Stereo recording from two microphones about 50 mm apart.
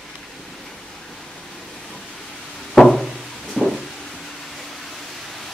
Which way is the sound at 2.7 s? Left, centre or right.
Centre.